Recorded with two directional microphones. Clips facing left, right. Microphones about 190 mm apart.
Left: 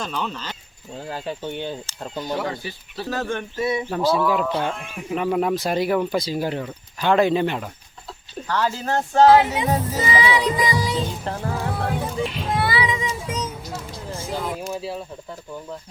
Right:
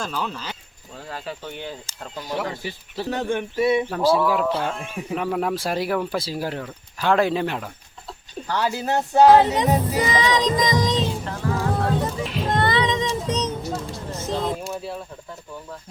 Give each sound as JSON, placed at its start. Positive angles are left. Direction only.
{"t": 0.0, "sound": "speech", "side_deg": -5}
{"t": 0.9, "sound": "speech", "side_deg": 25}
{"t": 3.0, "sound": "speech", "side_deg": -15}
{"t": 3.8, "sound": "speech", "side_deg": -5}
{"t": 8.4, "sound": "speech", "side_deg": -15}
{"t": 10.0, "sound": "music", "side_deg": 10}
{"t": 11.3, "sound": "music", "side_deg": 30}
{"t": 11.7, "sound": "music", "side_deg": 10}
{"t": 14.1, "sound": "a sound", "side_deg": 10}